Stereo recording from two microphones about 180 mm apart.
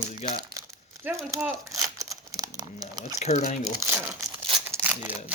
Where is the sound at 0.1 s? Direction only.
40° left (ahead or behind).